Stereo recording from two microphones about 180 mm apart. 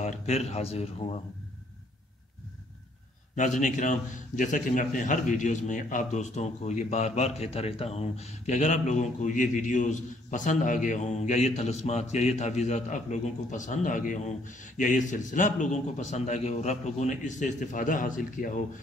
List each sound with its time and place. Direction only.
0.0 s speech: 35° left (ahead or behind)
3.3 s a man's voice: 45° left (ahead or behind)